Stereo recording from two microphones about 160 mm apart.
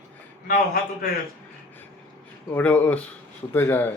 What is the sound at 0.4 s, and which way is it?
Speech, 65° left (ahead or behind).